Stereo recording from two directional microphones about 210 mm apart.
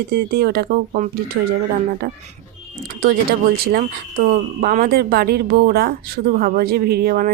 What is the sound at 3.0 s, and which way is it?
Speech, 45° right (ahead or behind).